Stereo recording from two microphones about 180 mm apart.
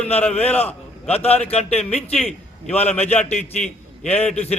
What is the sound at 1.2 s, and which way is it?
A man's voice, 35° left (ahead or behind).